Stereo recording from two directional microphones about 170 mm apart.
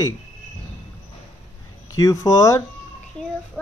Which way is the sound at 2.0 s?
20° left (ahead or behind).